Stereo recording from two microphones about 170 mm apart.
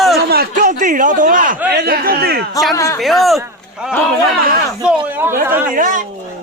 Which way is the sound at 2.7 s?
20° left (ahead or behind).